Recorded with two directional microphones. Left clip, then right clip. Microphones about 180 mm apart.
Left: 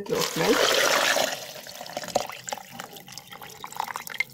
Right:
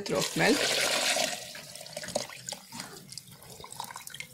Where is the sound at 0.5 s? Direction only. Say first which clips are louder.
Left 7 dB; 35° left (ahead or behind).